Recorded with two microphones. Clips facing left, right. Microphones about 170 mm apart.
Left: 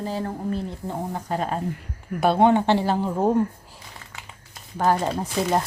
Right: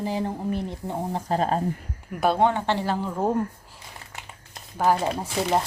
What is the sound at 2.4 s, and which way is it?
Speech, 20° left (ahead or behind).